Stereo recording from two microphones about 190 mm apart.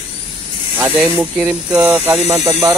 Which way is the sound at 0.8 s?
10° right (ahead or behind).